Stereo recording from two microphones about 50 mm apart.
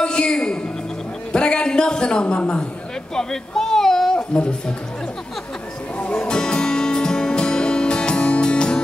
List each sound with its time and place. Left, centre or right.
0.0 s a sound: centre
3.2 s speech: centre
5.9 s music: left